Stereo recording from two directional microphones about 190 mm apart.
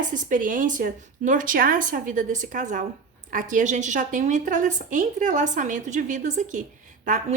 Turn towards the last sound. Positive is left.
turn(degrees=-45)  # may be behind; listen again after turning